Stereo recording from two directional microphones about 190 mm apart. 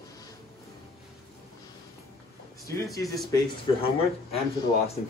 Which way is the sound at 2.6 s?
15° left (ahead or behind).